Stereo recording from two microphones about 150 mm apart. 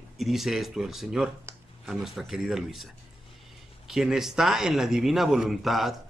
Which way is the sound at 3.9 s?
5° right (ahead or behind).